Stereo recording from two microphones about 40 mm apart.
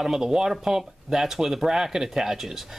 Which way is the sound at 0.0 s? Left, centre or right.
Centre.